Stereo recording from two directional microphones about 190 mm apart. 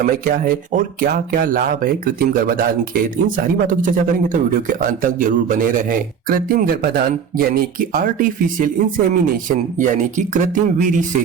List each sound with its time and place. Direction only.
0.0 s speech: 50° right (ahead or behind)